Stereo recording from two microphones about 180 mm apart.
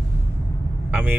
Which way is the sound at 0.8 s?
10° right (ahead or behind).